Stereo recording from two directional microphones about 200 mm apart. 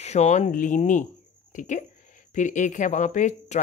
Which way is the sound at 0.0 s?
35° left (ahead or behind).